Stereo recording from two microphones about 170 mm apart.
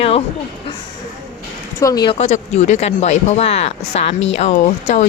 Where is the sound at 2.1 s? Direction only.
40° left (ahead or behind).